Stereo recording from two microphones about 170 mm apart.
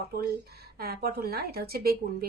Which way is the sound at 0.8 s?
65° right (ahead or behind).